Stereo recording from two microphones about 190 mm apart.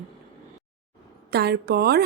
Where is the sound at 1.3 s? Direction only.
60° right (ahead or behind).